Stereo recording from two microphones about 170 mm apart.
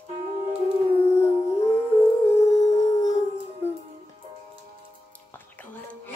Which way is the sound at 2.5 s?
20° left (ahead or behind).